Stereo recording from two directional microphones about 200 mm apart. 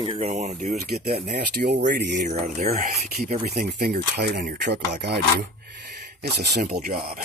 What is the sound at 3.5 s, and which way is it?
Speech, 50° right (ahead or behind).